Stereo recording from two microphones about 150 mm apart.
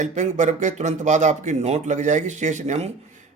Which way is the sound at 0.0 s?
55° right (ahead or behind).